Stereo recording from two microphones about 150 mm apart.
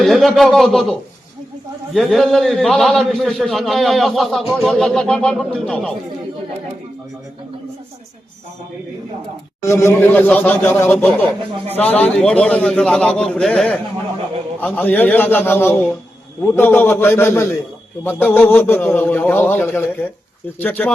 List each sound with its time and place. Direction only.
0.0 s a man's voice: centre (ahead or behind)
9.6 s a man's voice: 20° left (ahead or behind)